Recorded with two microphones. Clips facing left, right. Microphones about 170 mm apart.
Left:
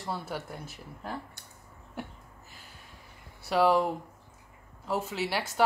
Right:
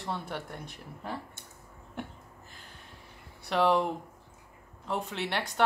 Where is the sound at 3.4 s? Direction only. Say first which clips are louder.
Left 2 dB; centre (ahead or behind).